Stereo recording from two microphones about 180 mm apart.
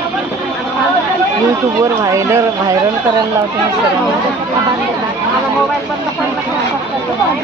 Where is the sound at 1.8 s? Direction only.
15° right (ahead or behind).